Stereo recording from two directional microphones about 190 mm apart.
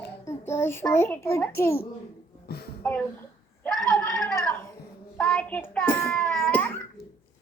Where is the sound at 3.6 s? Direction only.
5° left (ahead or behind).